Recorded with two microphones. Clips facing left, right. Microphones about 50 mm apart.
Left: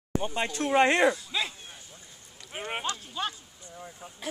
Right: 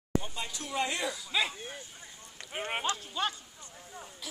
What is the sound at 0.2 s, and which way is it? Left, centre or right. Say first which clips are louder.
Speech: left 10 dB; left.